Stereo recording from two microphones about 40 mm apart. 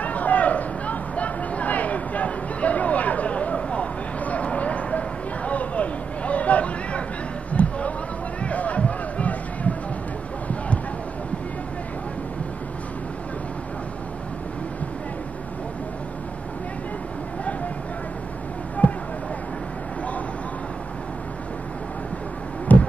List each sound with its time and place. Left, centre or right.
0.0 s a sound: left
8.5 s music: left
22.7 s heart sounds: left